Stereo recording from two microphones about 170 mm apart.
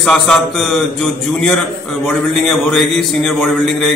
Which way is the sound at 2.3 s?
Centre (ahead or behind).